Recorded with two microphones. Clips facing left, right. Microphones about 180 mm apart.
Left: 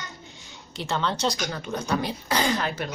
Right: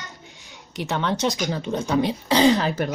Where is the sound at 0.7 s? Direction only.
15° right (ahead or behind).